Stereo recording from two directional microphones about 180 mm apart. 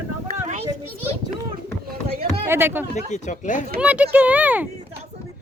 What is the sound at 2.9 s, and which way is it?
Speech, 40° left (ahead or behind).